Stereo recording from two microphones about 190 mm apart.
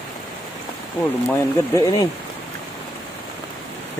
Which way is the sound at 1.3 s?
15° left (ahead or behind).